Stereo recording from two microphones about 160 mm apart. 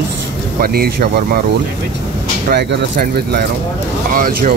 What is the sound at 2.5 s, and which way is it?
Speech, 85° right.